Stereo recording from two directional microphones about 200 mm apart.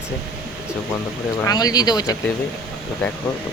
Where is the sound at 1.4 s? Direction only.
20° left (ahead or behind).